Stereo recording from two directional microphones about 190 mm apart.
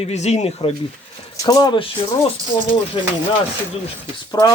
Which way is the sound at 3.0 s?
30° left (ahead or behind).